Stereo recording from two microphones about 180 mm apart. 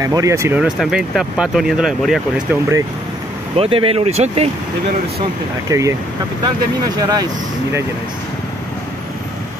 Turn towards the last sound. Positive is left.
turn(degrees=-20)  # may be behind; listen again after turning